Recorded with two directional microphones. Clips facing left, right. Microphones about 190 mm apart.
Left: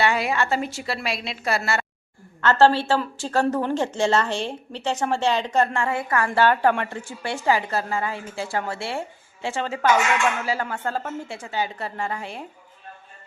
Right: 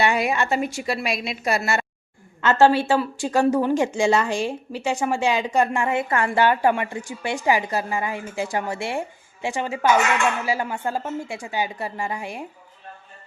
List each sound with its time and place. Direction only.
0.0 s a woman's voice: 15° right (ahead or behind)